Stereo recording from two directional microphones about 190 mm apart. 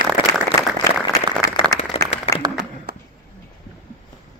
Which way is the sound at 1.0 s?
15° left (ahead or behind).